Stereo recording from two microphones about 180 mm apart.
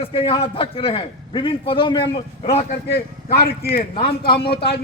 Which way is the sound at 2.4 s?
40° left (ahead or behind).